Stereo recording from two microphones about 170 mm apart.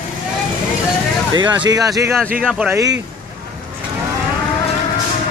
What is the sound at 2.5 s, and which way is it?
Speech, 5° right (ahead or behind).